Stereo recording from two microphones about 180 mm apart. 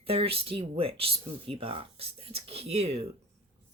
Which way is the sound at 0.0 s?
30° right (ahead or behind).